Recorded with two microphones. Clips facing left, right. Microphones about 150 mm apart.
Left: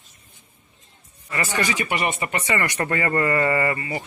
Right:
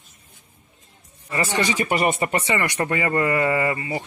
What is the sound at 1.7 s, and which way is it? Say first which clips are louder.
Speech: right 4 dB; 40° right (ahead or behind).